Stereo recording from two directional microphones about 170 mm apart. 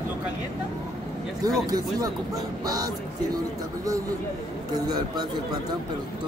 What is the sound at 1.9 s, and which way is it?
Speech, 20° right (ahead or behind).